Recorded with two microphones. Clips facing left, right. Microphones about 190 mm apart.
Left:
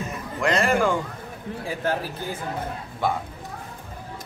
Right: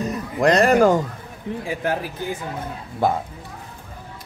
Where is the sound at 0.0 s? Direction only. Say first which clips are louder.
Right 7 dB; 40° right (ahead or behind).